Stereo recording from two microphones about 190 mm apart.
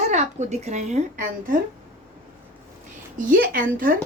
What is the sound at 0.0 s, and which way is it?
A woman's voice, 40° right (ahead or behind).